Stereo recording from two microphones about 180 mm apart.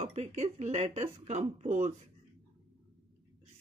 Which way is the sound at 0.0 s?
35° right (ahead or behind).